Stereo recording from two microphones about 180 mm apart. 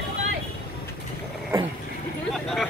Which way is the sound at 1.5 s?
20° right (ahead or behind).